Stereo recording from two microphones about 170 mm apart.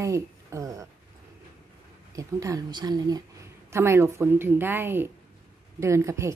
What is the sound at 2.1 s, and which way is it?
A woman's voice, 20° right (ahead or behind).